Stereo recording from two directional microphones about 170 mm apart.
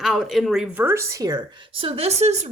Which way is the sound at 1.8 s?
35° right (ahead or behind).